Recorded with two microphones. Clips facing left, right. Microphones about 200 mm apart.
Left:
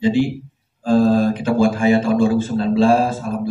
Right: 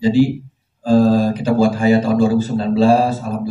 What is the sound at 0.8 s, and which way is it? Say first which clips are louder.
Speech: right 2 dB; 35° right (ahead or behind).